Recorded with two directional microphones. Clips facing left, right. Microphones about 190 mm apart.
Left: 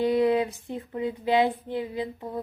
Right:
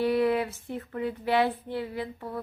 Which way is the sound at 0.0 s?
20° left (ahead or behind).